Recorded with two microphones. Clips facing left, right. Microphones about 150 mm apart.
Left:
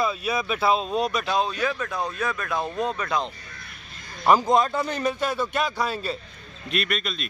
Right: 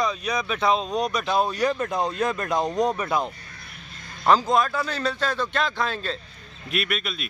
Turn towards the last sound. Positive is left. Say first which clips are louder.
# even
turn(degrees=-5)  # may be behind; listen again after turning